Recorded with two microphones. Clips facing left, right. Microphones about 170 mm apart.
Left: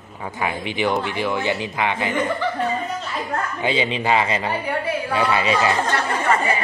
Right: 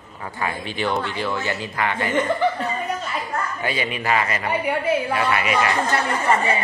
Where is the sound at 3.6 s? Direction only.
25° left (ahead or behind).